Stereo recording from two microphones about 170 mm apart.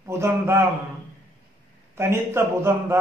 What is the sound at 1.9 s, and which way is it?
A man's voice, 15° right (ahead or behind).